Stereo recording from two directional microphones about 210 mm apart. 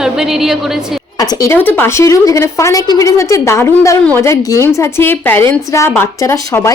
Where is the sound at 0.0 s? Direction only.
Centre (ahead or behind).